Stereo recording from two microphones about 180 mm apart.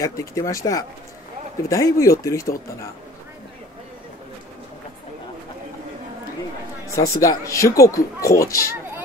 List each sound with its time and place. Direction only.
0.0 s speech: 15° left (ahead or behind)
7.0 s speech: 20° left (ahead or behind)